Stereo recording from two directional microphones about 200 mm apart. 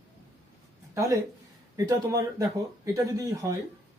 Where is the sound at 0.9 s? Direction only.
15° right (ahead or behind).